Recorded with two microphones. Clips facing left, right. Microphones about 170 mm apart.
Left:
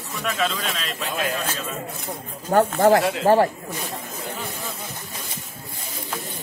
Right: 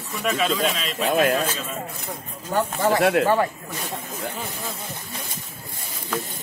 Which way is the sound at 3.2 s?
40° left (ahead or behind).